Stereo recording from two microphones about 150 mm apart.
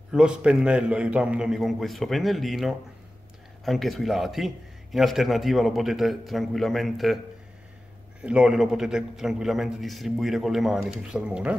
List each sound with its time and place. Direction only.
0.1 s a man's voice: 5° right (ahead or behind)
8.2 s a man's voice: 5° right (ahead or behind)